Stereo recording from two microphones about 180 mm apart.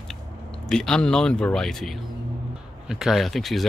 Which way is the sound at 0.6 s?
5° left (ahead or behind).